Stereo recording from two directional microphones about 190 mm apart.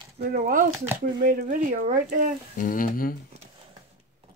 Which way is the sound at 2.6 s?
45° left (ahead or behind).